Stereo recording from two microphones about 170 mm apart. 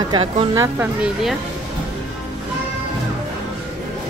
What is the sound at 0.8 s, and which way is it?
Speech, 5° right (ahead or behind).